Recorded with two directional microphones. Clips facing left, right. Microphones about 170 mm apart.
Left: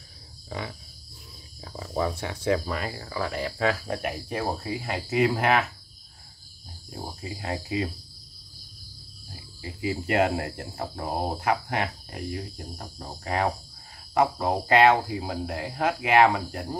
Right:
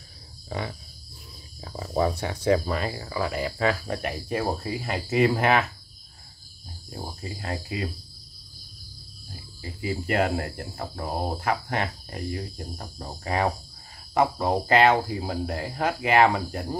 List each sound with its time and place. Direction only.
1.6 s speech: 40° right (ahead or behind)
3.0 s speech: 10° right (ahead or behind)
7.2 s speech: 20° left (ahead or behind)
9.8 s speech: 20° left (ahead or behind); by 16.6 s centre (ahead or behind)